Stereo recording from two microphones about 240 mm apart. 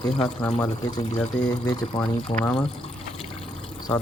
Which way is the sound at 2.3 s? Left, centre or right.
Centre.